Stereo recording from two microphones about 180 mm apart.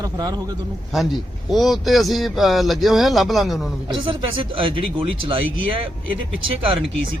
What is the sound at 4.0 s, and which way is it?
Speech, 30° right (ahead or behind).